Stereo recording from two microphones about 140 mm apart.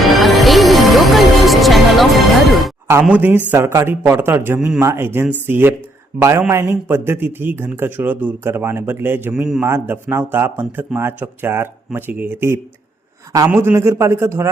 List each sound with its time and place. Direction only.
0.0 s music: centre (ahead or behind)
2.9 s a man's voice: 10° right (ahead or behind)